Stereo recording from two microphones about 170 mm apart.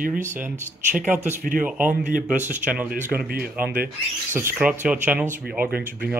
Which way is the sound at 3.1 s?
60° right (ahead or behind).